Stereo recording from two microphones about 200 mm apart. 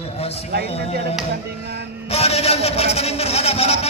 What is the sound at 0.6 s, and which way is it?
Speech, 30° left (ahead or behind).